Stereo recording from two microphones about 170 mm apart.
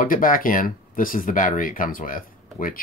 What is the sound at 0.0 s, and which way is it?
Speech, 55° left (ahead or behind).